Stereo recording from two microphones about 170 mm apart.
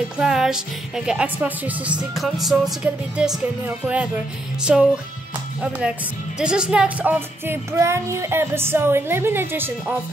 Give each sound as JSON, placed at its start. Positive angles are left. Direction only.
{"t": 0.2, "sound": "speech", "side_deg": -5}